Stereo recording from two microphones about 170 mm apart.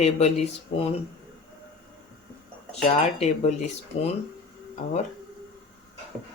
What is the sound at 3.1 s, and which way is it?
Speech, 40° left (ahead or behind).